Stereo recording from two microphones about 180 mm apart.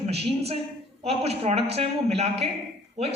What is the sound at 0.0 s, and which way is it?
A woman's voice, 35° right (ahead or behind).